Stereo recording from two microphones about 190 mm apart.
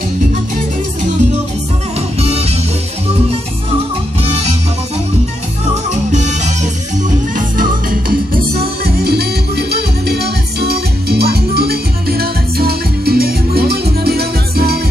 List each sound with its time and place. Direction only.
2.1 s music: 30° right (ahead or behind)
4.2 s music: 35° right (ahead or behind)
6.1 s music: 40° right (ahead or behind); by 14.8 s 55° right (ahead or behind)